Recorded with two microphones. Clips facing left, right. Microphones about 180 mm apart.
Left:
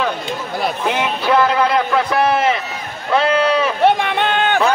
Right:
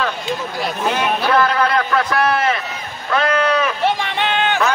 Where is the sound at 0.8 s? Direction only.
15° left (ahead or behind).